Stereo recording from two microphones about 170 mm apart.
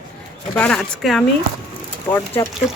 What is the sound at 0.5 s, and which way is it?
Speech, 5° left (ahead or behind).